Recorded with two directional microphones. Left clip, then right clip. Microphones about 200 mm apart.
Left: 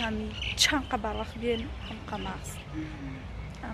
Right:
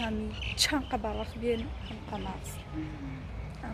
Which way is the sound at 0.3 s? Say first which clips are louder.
Left 3 dB; 40° right (ahead or behind).